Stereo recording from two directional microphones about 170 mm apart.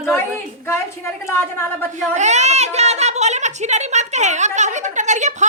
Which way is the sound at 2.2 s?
40° right (ahead or behind).